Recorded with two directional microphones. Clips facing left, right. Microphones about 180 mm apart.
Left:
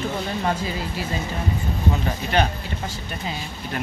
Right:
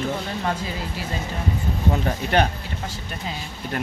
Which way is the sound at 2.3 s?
55° right (ahead or behind).